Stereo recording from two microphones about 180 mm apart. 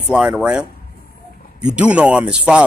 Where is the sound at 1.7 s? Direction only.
5° right (ahead or behind).